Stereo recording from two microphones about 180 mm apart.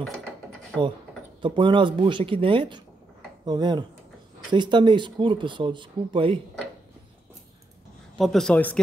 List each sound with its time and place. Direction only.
0.0 s mechanisms: centre (ahead or behind)
1.4 s speech: 25° right (ahead or behind)
8.2 s speech: centre (ahead or behind)